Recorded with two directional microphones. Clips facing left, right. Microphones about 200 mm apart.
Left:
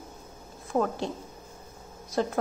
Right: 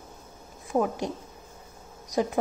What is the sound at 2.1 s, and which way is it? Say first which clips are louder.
Speech: right 1 dB; 15° right (ahead or behind).